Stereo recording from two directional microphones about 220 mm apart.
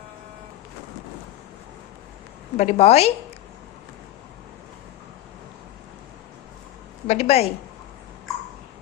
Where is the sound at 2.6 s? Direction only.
30° left (ahead or behind).